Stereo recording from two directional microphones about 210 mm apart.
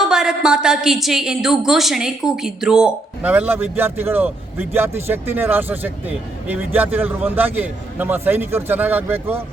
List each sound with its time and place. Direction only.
0.1 s a woman's voice: 5° right (ahead or behind)